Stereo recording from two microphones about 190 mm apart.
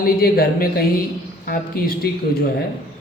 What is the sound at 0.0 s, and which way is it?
Speech, 50° left (ahead or behind).